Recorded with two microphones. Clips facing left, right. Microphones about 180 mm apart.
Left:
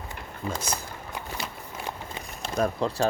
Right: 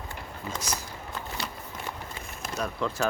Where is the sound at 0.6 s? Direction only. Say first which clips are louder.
Left 2 dB; 55° left (ahead or behind).